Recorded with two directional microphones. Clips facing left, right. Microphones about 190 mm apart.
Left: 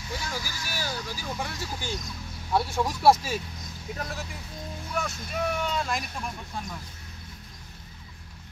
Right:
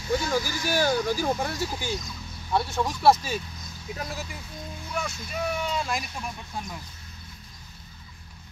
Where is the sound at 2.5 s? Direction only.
10° left (ahead or behind).